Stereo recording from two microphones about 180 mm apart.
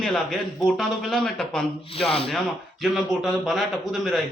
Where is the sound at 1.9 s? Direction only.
30° left (ahead or behind).